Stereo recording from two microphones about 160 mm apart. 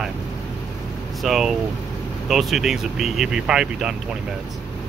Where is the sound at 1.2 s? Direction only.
Centre (ahead or behind).